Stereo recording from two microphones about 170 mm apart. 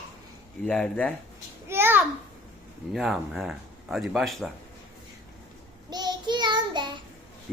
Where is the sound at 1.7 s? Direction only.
10° right (ahead or behind).